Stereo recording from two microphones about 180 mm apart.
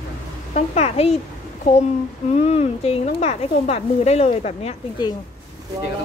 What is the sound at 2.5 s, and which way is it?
Speech, 35° left (ahead or behind).